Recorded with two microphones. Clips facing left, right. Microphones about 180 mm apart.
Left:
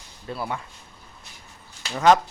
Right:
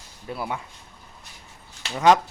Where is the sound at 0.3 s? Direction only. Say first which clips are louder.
Even; 15° right (ahead or behind).